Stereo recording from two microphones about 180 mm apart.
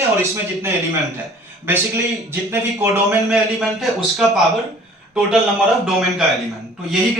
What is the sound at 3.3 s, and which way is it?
A man's voice, centre (ahead or behind).